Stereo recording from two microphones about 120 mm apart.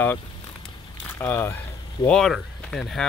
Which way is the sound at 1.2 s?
20° left (ahead or behind).